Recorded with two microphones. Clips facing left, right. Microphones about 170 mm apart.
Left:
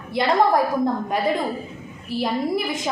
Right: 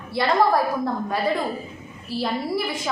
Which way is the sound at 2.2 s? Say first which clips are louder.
Left 2 dB; 20° left (ahead or behind).